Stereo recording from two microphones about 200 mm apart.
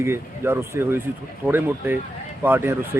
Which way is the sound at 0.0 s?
10° right (ahead or behind).